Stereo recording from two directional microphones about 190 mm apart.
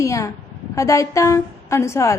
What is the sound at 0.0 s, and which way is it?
A woman's voice, 15° left (ahead or behind).